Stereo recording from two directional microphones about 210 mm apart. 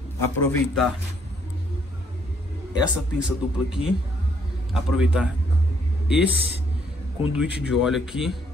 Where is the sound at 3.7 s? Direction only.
5° right (ahead or behind).